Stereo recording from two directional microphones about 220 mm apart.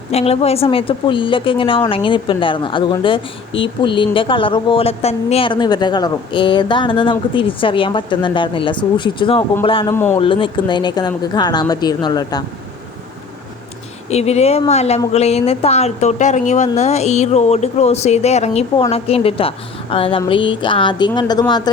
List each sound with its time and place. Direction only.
0.1 s a woman's voice: 30° left (ahead or behind)
9.9 s speech: 10° left (ahead or behind)
10.2 s a woman's voice: 25° left (ahead or behind)
14.1 s a woman's voice: 30° left (ahead or behind)